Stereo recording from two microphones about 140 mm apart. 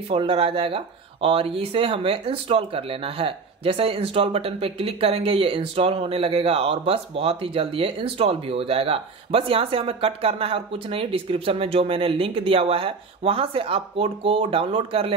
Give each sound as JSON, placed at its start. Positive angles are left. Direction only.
{"t": 0.1, "sound": "speech", "side_deg": -40}